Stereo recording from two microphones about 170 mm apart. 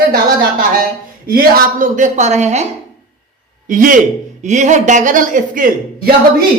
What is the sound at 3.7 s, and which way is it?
A man's voice, 50° right (ahead or behind).